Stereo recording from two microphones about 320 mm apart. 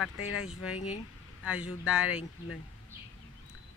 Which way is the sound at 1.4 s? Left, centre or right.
Centre.